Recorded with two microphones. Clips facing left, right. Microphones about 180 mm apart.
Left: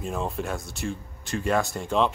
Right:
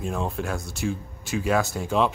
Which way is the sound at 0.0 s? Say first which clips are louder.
Right 1 dB; centre (ahead or behind).